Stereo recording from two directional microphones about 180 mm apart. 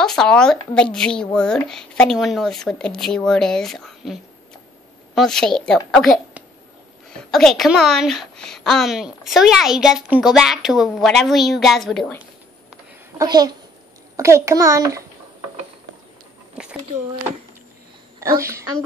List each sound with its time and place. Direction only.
0.0 s a woman's voice: 5° left (ahead or behind)
13.2 s a woman's voice: 20° right (ahead or behind)
16.6 s a sound: 5° right (ahead or behind)
18.4 s a child's voice: 15° right (ahead or behind)